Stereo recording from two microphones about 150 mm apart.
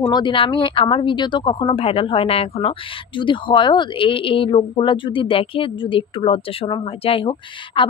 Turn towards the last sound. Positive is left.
turn(degrees=35)  # may be behind; listen again after turning